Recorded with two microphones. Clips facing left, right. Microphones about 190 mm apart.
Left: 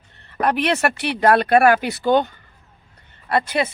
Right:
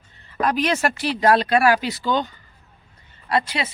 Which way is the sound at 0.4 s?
65° left (ahead or behind).